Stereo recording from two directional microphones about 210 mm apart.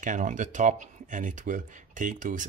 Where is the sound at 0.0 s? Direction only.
40° right (ahead or behind).